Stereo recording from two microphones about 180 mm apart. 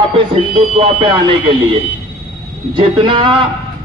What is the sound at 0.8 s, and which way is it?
Speech, 25° right (ahead or behind).